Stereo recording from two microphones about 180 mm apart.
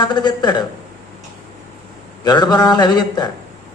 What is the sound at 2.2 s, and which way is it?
A man's voice, 25° left (ahead or behind).